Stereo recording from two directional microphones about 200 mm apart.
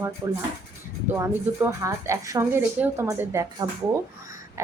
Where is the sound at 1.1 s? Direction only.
10° right (ahead or behind).